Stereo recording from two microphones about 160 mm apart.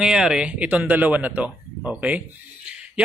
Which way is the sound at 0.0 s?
5° right (ahead or behind).